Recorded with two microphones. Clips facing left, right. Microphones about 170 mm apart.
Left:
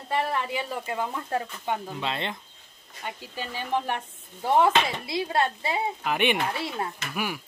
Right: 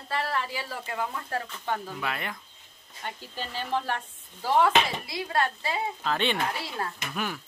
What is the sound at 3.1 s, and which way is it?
Speech, 15° left (ahead or behind).